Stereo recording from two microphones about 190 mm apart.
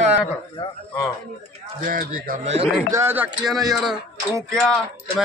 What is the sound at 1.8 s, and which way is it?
Speech, 45° right (ahead or behind).